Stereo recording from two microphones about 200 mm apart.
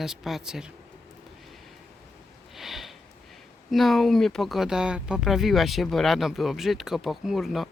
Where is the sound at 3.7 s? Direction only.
Centre (ahead or behind).